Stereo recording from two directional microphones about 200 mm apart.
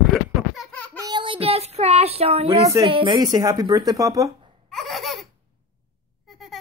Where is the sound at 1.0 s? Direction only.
20° right (ahead or behind).